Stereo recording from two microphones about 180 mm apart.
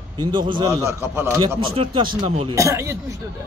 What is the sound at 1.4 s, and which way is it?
Speech, 30° right (ahead or behind).